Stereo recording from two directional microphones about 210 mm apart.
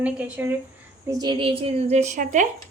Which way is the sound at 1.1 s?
20° right (ahead or behind).